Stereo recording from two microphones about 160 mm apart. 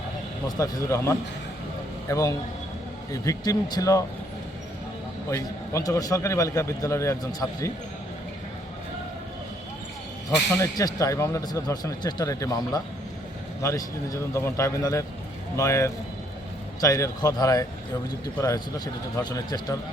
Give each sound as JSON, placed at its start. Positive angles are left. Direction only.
{"t": 0.4, "sound": "a man's voice", "side_deg": 20}
{"t": 5.3, "sound": "a man's voice", "side_deg": 20}
{"t": 10.6, "sound": "a man's voice", "side_deg": 20}